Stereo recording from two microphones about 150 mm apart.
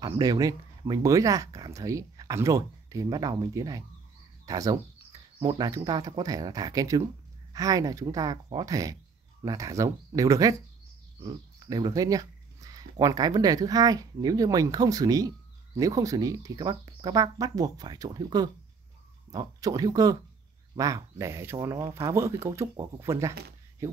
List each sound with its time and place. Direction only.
0.0 s speech: 25° right (ahead or behind)